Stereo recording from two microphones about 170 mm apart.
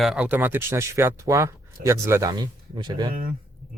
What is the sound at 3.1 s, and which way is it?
Speech, 55° right (ahead or behind).